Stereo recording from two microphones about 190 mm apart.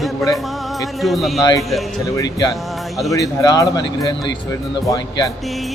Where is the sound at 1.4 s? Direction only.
20° left (ahead or behind).